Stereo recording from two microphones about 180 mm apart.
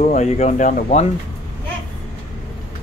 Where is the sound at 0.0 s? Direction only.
35° left (ahead or behind).